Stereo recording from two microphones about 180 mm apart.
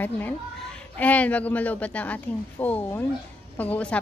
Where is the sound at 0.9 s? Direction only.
10° left (ahead or behind).